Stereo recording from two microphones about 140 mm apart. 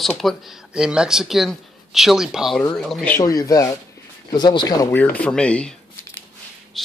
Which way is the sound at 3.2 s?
25° left (ahead or behind).